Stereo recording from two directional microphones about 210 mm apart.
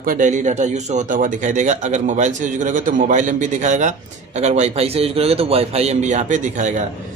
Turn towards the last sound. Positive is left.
turn(degrees=-35)  # may be behind; listen again after turning